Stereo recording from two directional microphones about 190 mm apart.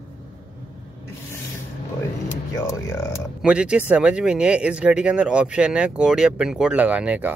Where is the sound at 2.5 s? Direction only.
15° left (ahead or behind).